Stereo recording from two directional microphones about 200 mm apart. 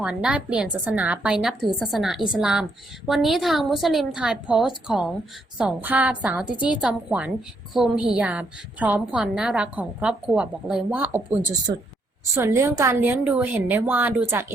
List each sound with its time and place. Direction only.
0.0 s a woman's voice: 5° right (ahead or behind)